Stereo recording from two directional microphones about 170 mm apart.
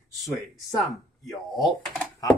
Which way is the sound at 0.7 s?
Centre (ahead or behind).